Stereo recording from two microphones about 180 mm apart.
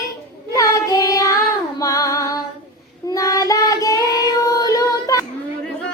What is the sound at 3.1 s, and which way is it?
Child singing, 20° left (ahead or behind).